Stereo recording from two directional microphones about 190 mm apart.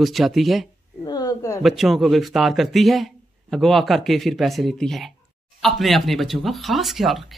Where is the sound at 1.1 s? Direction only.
20° left (ahead or behind).